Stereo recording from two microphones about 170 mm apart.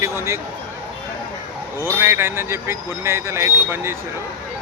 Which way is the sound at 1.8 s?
15° right (ahead or behind).